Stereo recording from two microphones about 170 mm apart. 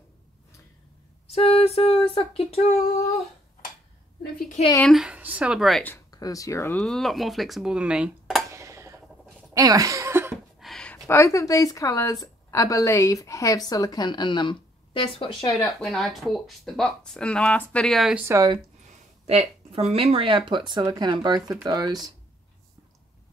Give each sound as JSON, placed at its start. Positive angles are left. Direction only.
{"t": 1.3, "sound": "a sound", "side_deg": 35}
{"t": 4.8, "sound": "speech", "side_deg": -5}
{"t": 6.1, "sound": "a woman's voice", "side_deg": 20}
{"t": 6.8, "sound": "speech", "side_deg": 5}
{"t": 8.5, "sound": "dishes", "side_deg": -20}
{"t": 9.5, "sound": "speech", "side_deg": -20}
{"t": 10.6, "sound": "a sound", "side_deg": 5}
{"t": 11.1, "sound": "a woman's voice", "side_deg": 15}
{"t": 15.5, "sound": "speech", "side_deg": 0}
{"t": 18.3, "sound": "speech", "side_deg": -20}
{"t": 19.7, "sound": "speech", "side_deg": -35}